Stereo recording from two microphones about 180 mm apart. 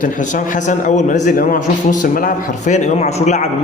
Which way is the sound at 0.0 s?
45° left (ahead or behind).